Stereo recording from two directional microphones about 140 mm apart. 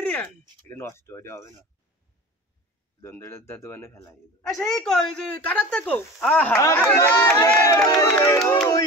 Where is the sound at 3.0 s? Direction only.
20° left (ahead or behind).